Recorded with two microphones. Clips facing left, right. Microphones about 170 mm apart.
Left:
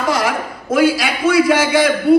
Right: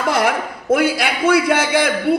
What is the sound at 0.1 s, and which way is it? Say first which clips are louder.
A man's voice: right 2 dB; 55° right (ahead or behind).